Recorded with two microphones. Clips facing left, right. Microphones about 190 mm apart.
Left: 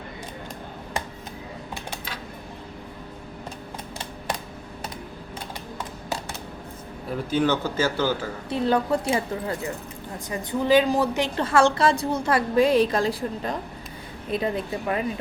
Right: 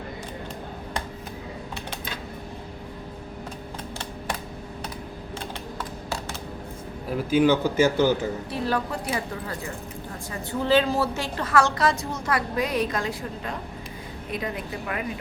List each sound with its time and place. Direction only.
7.3 s speech: 10° right (ahead or behind)
8.4 s a woman's voice: 20° left (ahead or behind)
10.2 s a woman's voice: 15° left (ahead or behind)
11.3 s a woman's voice: 30° left (ahead or behind)